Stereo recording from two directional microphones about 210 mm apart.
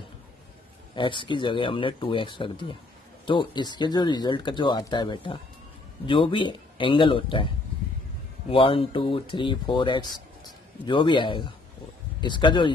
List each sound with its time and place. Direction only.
0.9 s speech: 25° left (ahead or behind)